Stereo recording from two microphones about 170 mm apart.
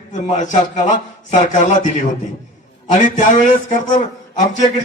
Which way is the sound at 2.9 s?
50° left (ahead or behind).